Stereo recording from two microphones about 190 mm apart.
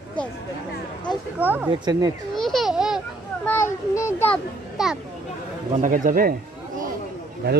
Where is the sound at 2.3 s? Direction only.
Centre (ahead or behind).